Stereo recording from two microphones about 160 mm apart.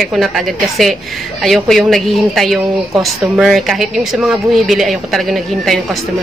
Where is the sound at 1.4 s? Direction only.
Centre (ahead or behind).